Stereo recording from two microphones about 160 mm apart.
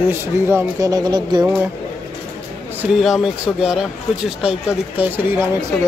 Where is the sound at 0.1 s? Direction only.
15° right (ahead or behind).